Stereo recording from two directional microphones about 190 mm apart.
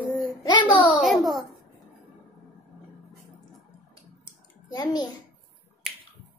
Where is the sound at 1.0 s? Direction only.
Centre (ahead or behind).